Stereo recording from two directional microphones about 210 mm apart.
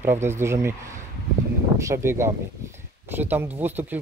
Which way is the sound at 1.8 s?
15° right (ahead or behind).